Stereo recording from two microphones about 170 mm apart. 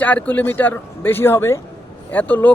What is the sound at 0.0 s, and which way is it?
Speech, 10° left (ahead or behind).